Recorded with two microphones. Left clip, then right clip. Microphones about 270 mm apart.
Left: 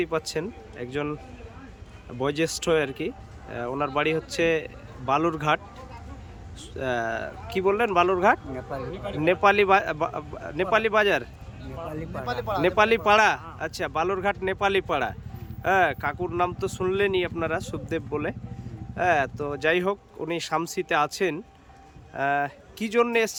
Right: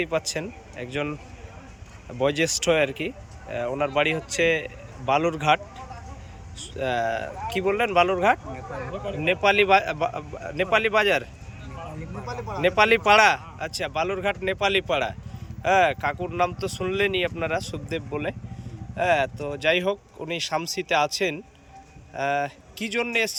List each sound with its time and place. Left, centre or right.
0.0 s speech: centre
2.1 s speech: centre
6.6 s speech: centre
12.1 s speech: left
12.7 s speech: centre